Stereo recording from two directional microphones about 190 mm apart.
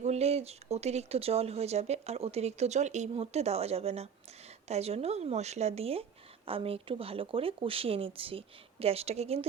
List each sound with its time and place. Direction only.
0.0 s speech: 35° right (ahead or behind)